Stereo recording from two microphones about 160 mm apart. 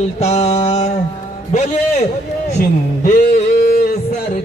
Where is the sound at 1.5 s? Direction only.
45° left (ahead or behind).